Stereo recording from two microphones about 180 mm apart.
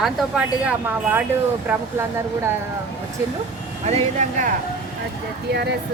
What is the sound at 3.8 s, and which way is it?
Speech, 40° right (ahead or behind).